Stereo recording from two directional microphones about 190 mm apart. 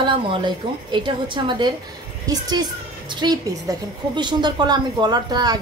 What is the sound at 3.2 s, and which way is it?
A woman's voice, 20° right (ahead or behind).